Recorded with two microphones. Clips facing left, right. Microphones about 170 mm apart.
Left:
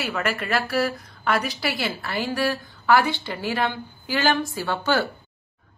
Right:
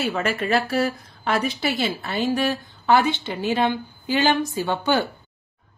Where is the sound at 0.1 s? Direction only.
25° right (ahead or behind).